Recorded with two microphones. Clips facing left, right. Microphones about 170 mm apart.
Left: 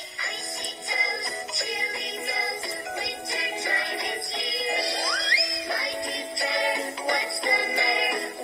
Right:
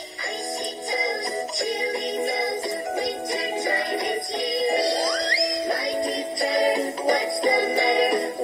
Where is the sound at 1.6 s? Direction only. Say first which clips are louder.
Right 9 dB; 40° right (ahead or behind).